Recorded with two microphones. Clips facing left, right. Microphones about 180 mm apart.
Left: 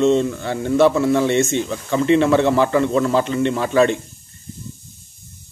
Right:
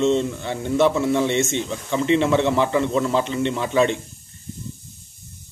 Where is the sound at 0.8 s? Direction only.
20° right (ahead or behind).